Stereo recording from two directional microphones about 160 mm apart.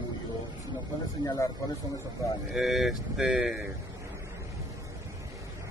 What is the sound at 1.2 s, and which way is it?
Speech, 20° left (ahead or behind).